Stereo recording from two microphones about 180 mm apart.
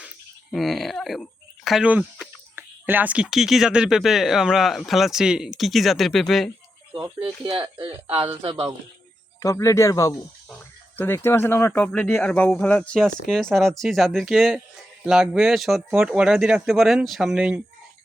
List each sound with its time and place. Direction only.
0.5 s speech: centre (ahead or behind)
6.9 s speech: 30° right (ahead or behind)
9.4 s speech: 15° left (ahead or behind); by 17.6 s 5° right (ahead or behind)